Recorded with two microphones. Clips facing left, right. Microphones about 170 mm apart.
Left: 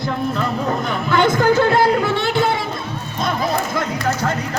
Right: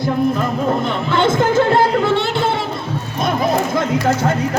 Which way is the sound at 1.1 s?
25° right (ahead or behind).